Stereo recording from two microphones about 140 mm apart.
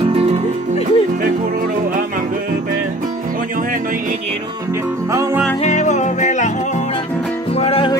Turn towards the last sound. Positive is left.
turn(degrees=45)  # may be behind; listen again after turning